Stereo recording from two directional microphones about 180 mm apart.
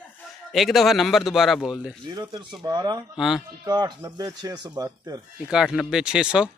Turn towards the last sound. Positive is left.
turn(degrees=-5)  # may be behind; listen again after turning